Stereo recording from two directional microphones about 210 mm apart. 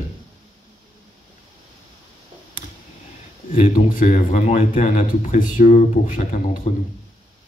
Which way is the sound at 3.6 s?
40° left (ahead or behind).